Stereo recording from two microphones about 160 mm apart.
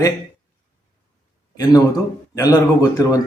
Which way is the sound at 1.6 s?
25° left (ahead or behind).